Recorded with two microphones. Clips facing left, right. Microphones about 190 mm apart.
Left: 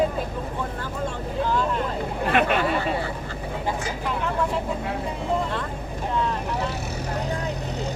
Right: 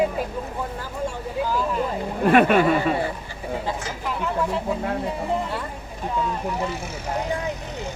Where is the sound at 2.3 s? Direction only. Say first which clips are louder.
Right 6 dB; 50° right (ahead or behind).